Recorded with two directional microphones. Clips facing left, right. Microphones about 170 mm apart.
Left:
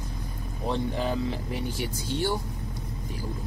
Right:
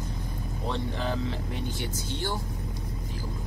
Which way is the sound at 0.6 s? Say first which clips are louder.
Left 3 dB; 15° left (ahead or behind).